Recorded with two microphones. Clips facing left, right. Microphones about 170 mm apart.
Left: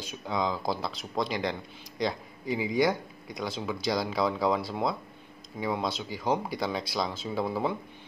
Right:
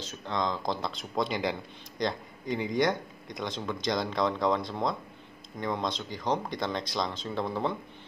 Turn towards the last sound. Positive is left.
turn(degrees=5)  # may be behind; listen again after turning